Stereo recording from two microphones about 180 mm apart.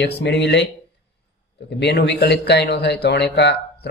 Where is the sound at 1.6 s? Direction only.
70° left (ahead or behind).